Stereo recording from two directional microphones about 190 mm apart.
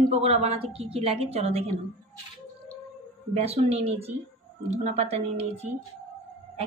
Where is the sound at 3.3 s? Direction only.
35° right (ahead or behind).